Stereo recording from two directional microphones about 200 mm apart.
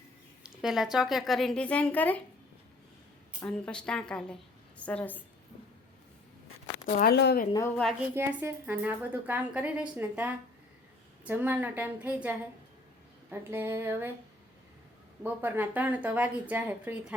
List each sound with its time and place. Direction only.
0.4 s a woman's voice: centre (ahead or behind)
3.4 s a woman's voice: 5° left (ahead or behind)
6.8 s speech: 45° left (ahead or behind)
8.1 s a woman's voice: 10° right (ahead or behind)
15.2 s a woman's voice: 10° right (ahead or behind)